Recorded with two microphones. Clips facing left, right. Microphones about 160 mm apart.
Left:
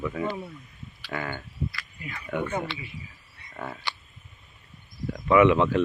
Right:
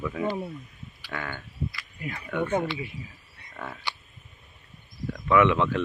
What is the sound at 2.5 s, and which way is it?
Speech, 20° right (ahead or behind).